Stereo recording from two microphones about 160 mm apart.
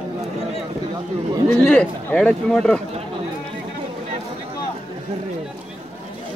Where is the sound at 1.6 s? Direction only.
10° left (ahead or behind).